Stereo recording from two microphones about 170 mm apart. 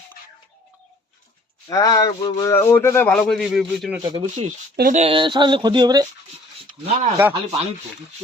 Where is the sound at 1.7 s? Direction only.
20° left (ahead or behind); by 4.0 s centre (ahead or behind).